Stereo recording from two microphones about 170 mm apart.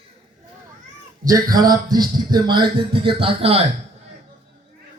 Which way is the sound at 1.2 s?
20° right (ahead or behind).